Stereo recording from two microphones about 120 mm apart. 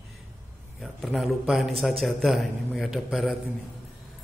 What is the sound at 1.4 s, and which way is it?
A man's voice, 5° right (ahead or behind).